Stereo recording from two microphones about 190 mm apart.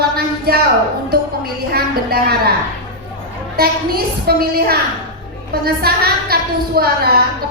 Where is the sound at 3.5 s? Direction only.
55° right (ahead or behind).